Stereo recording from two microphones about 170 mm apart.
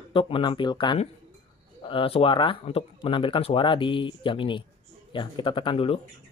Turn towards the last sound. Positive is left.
turn(degrees=35)  # may be behind; listen again after turning